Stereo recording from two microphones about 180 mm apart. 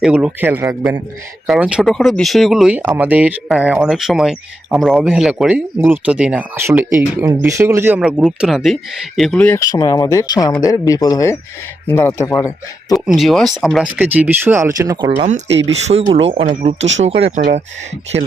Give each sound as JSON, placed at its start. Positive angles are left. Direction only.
{"t": 0.0, "sound": "speech", "side_deg": -5}
{"t": 1.5, "sound": "speech", "side_deg": -5}
{"t": 9.6, "sound": "speech", "side_deg": 20}
{"t": 13.1, "sound": "speech", "side_deg": 0}
{"t": 15.9, "sound": "speech", "side_deg": -35}
{"t": 16.7, "sound": "speech", "side_deg": -90}